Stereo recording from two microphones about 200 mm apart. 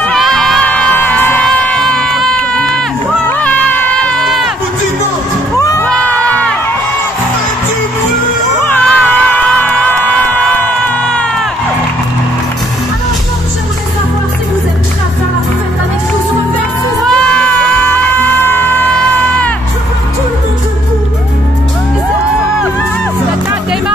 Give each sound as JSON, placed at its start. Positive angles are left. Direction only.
{"t": 0.0, "sound": "crowd", "side_deg": 5}
{"t": 5.6, "sound": "music", "side_deg": 15}
{"t": 5.9, "sound": "crowd", "side_deg": 5}
{"t": 8.6, "sound": "music", "side_deg": 10}
{"t": 17.1, "sound": "crowd", "side_deg": 5}
{"t": 18.5, "sound": "music", "side_deg": 10}